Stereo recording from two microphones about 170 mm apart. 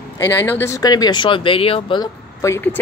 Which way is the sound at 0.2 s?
15° left (ahead or behind).